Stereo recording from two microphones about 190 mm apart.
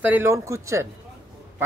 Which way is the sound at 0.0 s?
10° right (ahead or behind).